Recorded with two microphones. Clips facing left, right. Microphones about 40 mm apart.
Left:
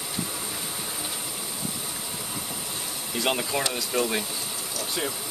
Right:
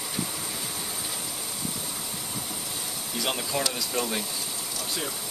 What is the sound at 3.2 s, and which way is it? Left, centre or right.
Speech, centre.